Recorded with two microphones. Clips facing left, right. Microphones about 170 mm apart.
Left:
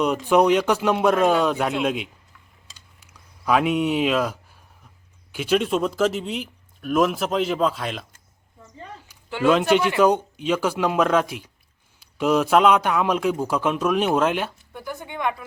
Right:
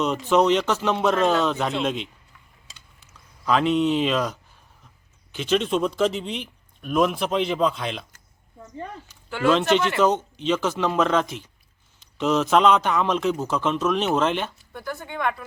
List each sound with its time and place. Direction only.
0.0 s a man's voice: 10° left (ahead or behind)
3.1 s speech: 10° left (ahead or behind)
9.0 s a man's voice: 15° left (ahead or behind)